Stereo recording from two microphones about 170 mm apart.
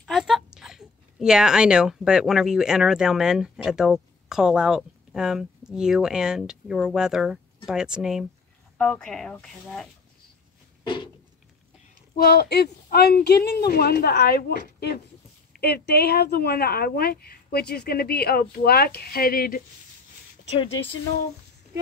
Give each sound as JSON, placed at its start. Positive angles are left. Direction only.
{"t": 0.0, "sound": "speech", "side_deg": 0}
{"t": 8.7, "sound": "speech", "side_deg": 5}
{"t": 10.8, "sound": "a sound", "side_deg": 25}
{"t": 12.2, "sound": "a woman's voice", "side_deg": 65}
{"t": 20.4, "sound": "speech", "side_deg": 35}